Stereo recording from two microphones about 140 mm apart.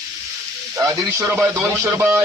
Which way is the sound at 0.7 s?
25° right (ahead or behind).